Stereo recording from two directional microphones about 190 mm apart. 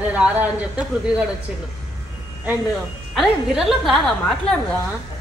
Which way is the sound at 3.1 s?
Centre (ahead or behind).